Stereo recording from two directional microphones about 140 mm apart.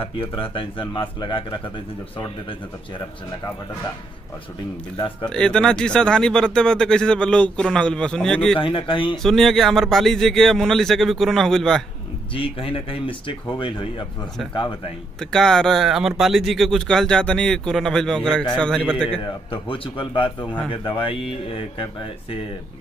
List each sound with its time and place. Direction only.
0.0 s speech: 40° left (ahead or behind)
5.2 s speech: 5° left (ahead or behind)
8.5 s speech: 40° left (ahead or behind)
9.2 s speech: centre (ahead or behind)
12.4 s speech: 40° left (ahead or behind)
15.1 s a man's voice: 5° left (ahead or behind)
19.5 s speech: 35° left (ahead or behind)